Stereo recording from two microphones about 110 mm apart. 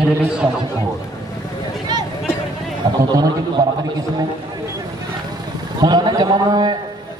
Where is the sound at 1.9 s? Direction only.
40° right (ahead or behind).